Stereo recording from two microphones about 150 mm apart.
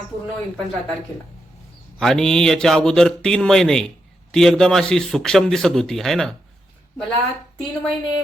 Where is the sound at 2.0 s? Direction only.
5° left (ahead or behind).